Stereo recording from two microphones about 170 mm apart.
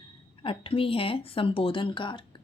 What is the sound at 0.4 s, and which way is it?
Speech, 35° left (ahead or behind).